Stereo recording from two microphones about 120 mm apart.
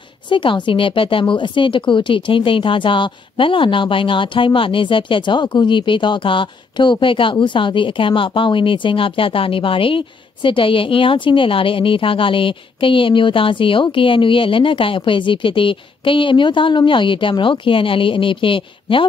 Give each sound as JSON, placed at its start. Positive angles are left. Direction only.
{"t": 0.3, "sound": "speech", "side_deg": 45}